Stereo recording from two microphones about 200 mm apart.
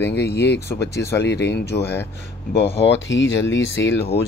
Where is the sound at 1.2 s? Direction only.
60° left (ahead or behind).